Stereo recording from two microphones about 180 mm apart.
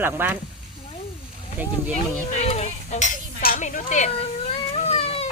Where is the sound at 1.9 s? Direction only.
35° left (ahead or behind).